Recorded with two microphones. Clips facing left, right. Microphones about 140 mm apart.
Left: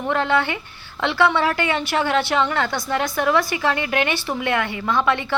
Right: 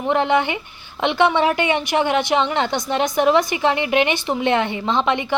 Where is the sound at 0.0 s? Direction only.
20° right (ahead or behind).